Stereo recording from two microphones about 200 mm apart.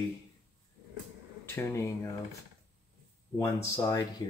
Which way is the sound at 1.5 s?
15° left (ahead or behind).